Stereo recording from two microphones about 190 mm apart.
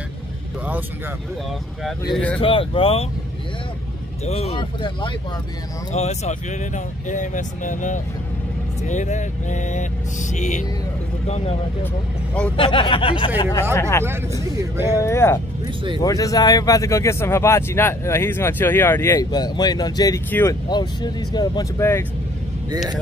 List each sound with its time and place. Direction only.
2.1 s speech: 5° left (ahead or behind)
2.4 s speech: 30° left (ahead or behind)
4.3 s speech: 35° left (ahead or behind)
5.9 s speech: 35° left (ahead or behind)
12.5 s speech: 25° left (ahead or behind)
15.6 s speech: 25° right (ahead or behind)
16.0 s speech: 20° left (ahead or behind)